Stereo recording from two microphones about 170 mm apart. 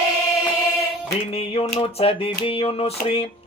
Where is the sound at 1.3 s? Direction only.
35° left (ahead or behind).